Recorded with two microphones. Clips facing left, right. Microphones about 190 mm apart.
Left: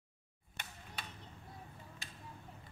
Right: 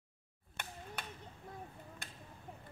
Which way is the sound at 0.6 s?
50° right (ahead or behind).